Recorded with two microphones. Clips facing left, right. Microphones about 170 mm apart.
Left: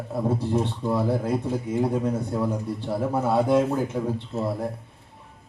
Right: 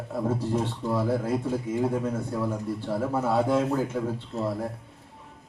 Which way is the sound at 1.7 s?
15° left (ahead or behind).